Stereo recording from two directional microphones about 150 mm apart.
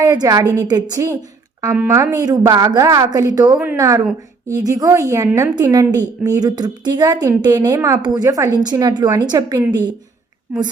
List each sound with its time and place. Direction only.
0.0 s a woman's voice: 25° right (ahead or behind)
1.7 s a woman's voice: 10° right (ahead or behind)
2.0 s a woman's voice: 25° right (ahead or behind)